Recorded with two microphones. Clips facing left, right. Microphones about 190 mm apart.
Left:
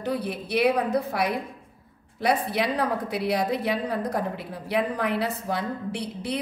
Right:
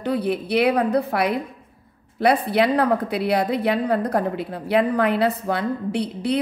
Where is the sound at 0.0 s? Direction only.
60° right (ahead or behind).